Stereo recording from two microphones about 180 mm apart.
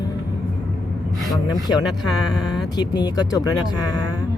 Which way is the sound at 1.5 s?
25° left (ahead or behind).